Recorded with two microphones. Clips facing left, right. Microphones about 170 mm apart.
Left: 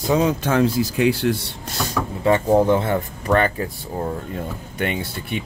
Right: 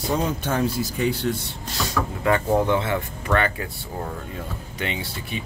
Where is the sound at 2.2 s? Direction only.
25° left (ahead or behind).